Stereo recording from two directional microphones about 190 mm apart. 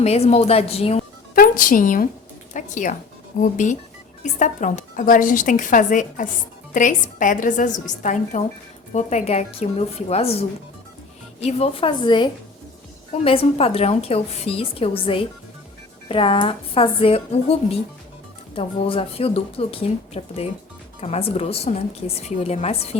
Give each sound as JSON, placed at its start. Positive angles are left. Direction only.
{"t": 0.0, "sound": "a woman's voice", "side_deg": 35}
{"t": 1.4, "sound": "a woman's voice", "side_deg": 45}